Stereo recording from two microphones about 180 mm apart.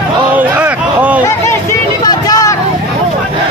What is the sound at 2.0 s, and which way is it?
Vehicle, 20° left (ahead or behind).